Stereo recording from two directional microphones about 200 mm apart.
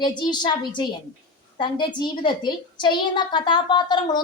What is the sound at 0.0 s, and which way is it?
A woman's voice, 20° left (ahead or behind).